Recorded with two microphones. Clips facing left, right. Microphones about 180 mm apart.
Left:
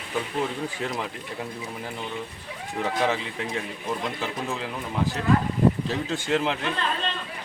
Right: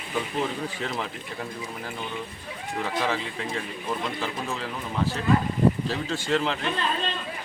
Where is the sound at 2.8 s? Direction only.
15° left (ahead or behind).